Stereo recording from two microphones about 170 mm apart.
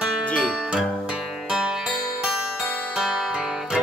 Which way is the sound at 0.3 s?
5° left (ahead or behind).